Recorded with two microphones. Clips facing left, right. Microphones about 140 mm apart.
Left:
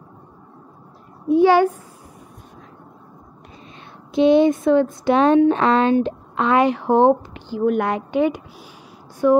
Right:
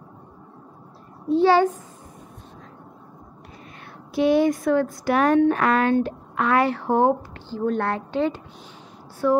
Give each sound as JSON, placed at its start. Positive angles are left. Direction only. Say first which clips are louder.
{"t": 1.3, "sound": "a woman's voice", "louder": "left 3 dB", "side_deg": 15}
{"t": 4.1, "sound": "speech", "louder": "left 5 dB", "side_deg": 20}